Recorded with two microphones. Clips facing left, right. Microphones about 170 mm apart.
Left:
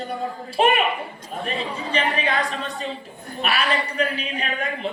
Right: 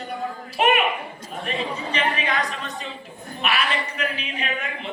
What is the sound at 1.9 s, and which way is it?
A woman's voice, 35° left (ahead or behind).